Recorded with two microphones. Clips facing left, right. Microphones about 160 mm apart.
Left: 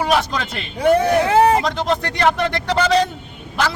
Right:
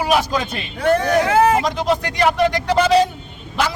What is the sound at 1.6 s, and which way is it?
A man's voice, 10° right (ahead or behind).